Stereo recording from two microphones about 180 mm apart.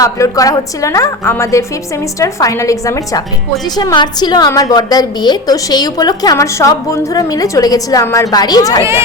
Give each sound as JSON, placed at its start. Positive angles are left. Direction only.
{"t": 0.0, "sound": "a woman's voice", "side_deg": 20}